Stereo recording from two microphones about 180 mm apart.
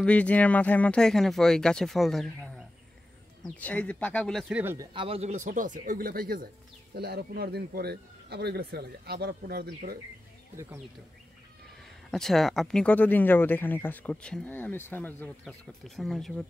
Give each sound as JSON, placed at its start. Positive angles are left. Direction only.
{"t": 0.0, "sound": "speech", "side_deg": 5}
{"t": 4.7, "sound": "speech", "side_deg": -30}
{"t": 12.1, "sound": "speech", "side_deg": 0}